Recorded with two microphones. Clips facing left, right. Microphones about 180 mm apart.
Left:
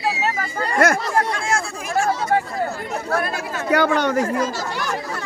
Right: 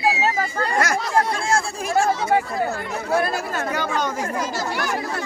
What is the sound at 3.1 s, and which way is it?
Speech, 35° right (ahead or behind).